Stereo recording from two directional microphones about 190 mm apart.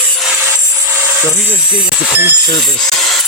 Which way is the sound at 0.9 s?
10° right (ahead or behind).